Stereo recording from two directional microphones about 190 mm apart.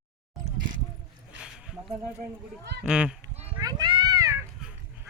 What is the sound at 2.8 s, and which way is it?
Speech, 5° right (ahead or behind).